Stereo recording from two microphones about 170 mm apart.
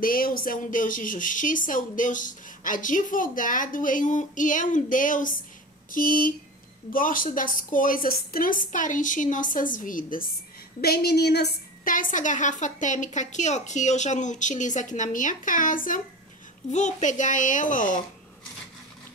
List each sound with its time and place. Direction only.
0.0 s a woman's voice: 55° left (ahead or behind)
10.8 s a woman's voice: 65° left (ahead or behind); by 17.9 s 50° left (ahead or behind)